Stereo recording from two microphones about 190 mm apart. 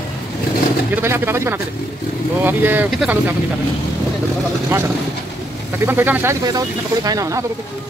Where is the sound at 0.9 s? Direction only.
10° right (ahead or behind).